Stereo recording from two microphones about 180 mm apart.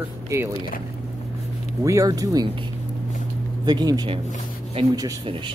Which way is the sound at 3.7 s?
20° right (ahead or behind).